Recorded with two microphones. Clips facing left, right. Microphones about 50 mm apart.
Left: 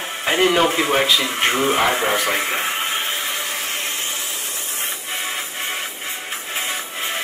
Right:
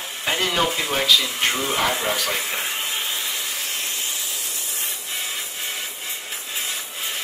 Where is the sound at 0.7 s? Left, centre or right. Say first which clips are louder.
Left 3 dB; left.